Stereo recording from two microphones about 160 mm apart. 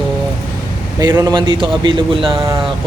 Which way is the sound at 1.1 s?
25° right (ahead or behind).